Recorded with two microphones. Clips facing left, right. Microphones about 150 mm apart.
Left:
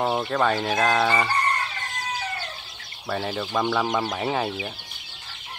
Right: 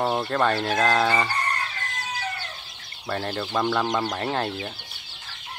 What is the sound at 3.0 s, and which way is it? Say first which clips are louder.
Speech: left 1 dB; 5° left (ahead or behind).